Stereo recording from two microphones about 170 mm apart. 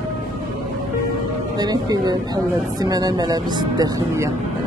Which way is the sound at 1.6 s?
25° right (ahead or behind).